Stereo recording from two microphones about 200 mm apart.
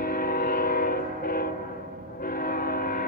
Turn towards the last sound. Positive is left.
turn(degrees=45)  # may be behind; listen again after turning